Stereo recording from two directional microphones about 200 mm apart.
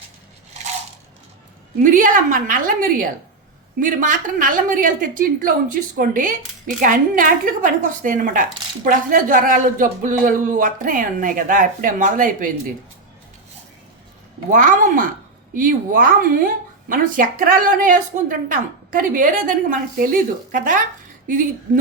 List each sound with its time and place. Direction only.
1.8 s a woman's voice: 40° right (ahead or behind)
14.5 s a woman's voice: 40° right (ahead or behind)